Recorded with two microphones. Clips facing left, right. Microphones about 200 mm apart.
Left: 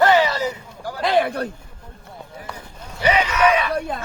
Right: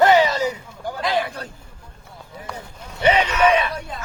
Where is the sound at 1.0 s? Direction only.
55° left (ahead or behind).